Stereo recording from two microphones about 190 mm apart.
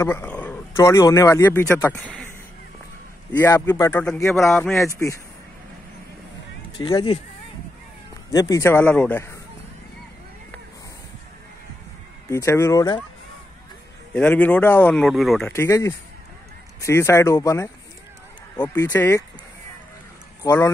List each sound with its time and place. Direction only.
0.0 s speech: 10° left (ahead or behind)
3.3 s a man's voice: 10° left (ahead or behind)
4.8 s speech: 15° left (ahead or behind)
6.8 s speech: 25° left (ahead or behind)
8.3 s speech: 20° left (ahead or behind)
12.3 s speech: 15° left (ahead or behind)
14.1 s speech: 10° left (ahead or behind)
15.5 s speech: 15° left (ahead or behind)